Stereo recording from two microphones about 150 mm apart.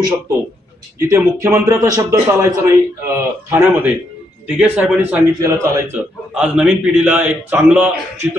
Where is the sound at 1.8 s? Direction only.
20° right (ahead or behind).